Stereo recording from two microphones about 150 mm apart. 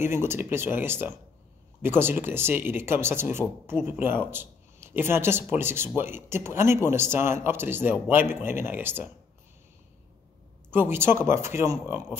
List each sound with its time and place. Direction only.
0.0 s speech: 15° right (ahead or behind)
10.7 s speech: 15° right (ahead or behind)